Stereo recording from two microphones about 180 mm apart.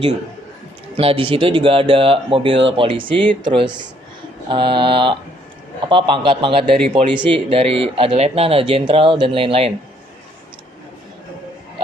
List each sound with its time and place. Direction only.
0.9 s speech: 30° right (ahead or behind)